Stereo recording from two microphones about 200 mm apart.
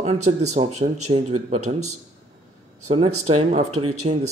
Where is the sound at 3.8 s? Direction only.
90° right.